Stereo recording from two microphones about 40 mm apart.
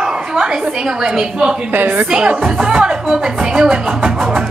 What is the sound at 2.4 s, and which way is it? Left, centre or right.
Music, centre.